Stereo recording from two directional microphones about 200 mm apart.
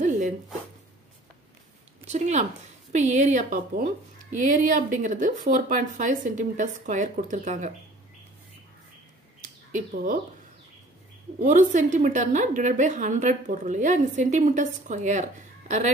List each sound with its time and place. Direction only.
2.0 s speech: 35° right (ahead or behind)
9.4 s bird: 40° right (ahead or behind)
11.3 s speech: 40° right (ahead or behind)